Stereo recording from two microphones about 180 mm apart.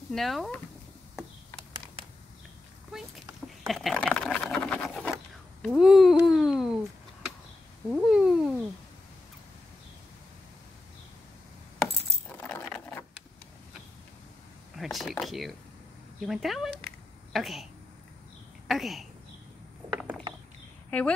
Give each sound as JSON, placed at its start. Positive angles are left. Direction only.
{"t": 0.1, "sound": "speech", "side_deg": 0}
{"t": 3.6, "sound": "sewing machine", "side_deg": 0}
{"t": 5.6, "sound": "a sound", "side_deg": 0}
{"t": 7.9, "sound": "cat", "side_deg": -5}
{"t": 12.3, "sound": "coin", "side_deg": 10}
{"t": 14.8, "sound": "a sound", "side_deg": 0}
{"t": 16.2, "sound": "speech", "side_deg": 0}
{"t": 18.7, "sound": "a sound", "side_deg": 0}
{"t": 19.9, "sound": "mechanisms", "side_deg": 0}